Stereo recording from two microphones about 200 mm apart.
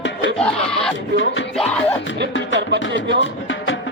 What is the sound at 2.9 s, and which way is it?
Speech, 60° right (ahead or behind).